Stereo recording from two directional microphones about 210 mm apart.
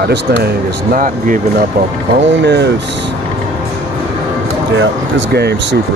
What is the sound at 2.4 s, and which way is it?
Speech, 55° right (ahead or behind).